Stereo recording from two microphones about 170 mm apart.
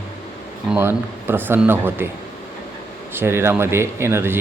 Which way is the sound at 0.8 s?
15° right (ahead or behind).